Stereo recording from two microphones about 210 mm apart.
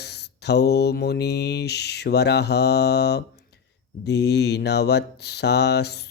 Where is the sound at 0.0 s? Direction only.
50° left (ahead or behind).